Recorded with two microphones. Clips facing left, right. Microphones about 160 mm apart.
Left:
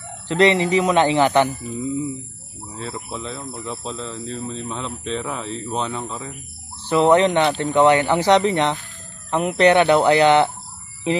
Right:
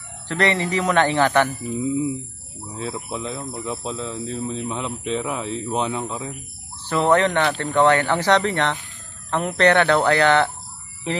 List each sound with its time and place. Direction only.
0.3 s speech: 20° left (ahead or behind)
1.8 s speech: 5° right (ahead or behind)
6.9 s speech: 20° left (ahead or behind)